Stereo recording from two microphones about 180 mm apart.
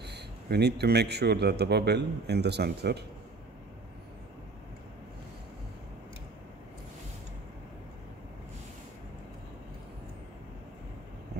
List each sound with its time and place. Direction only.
0.0 s speech: 65° right (ahead or behind)